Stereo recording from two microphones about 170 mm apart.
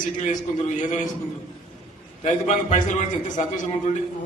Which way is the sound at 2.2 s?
45° left (ahead or behind).